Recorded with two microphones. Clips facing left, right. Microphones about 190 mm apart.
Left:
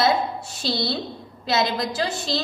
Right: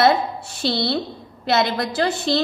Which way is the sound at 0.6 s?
60° right (ahead or behind).